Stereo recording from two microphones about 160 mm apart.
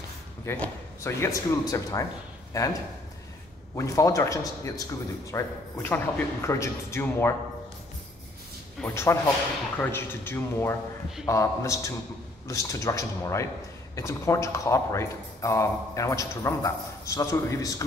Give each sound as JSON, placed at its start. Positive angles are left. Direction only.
{"t": 0.5, "sound": "speech", "side_deg": 15}
{"t": 8.8, "sound": "speech", "side_deg": 15}